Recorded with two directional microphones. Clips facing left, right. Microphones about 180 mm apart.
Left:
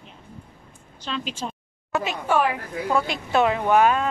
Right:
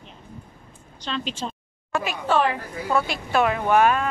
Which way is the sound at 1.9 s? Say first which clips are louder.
Even; 15° left (ahead or behind).